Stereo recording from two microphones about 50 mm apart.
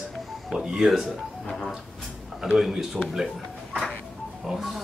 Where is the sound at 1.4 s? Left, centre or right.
Centre.